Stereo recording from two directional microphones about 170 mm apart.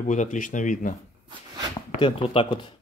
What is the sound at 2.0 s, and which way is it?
Speech, 30° left (ahead or behind).